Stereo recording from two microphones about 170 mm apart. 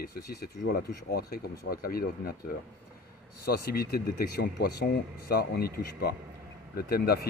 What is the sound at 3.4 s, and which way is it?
Speech, 65° left (ahead or behind).